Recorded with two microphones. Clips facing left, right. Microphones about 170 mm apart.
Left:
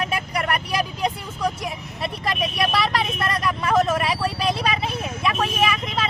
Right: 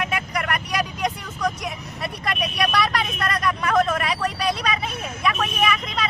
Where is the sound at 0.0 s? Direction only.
30° left (ahead or behind).